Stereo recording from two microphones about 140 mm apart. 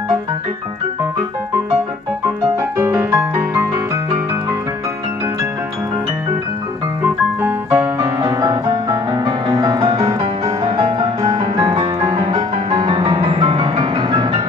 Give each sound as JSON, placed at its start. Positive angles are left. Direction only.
{"t": 2.2, "sound": "music", "side_deg": -20}
{"t": 7.4, "sound": "music", "side_deg": -15}